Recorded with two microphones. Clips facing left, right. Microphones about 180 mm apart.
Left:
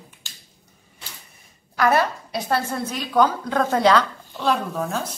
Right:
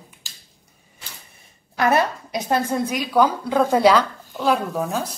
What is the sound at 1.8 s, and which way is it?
A woman's voice, 20° right (ahead or behind).